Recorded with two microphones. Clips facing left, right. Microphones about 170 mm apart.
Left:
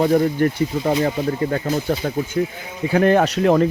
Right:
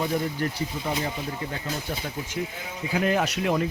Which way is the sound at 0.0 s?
55° left (ahead or behind).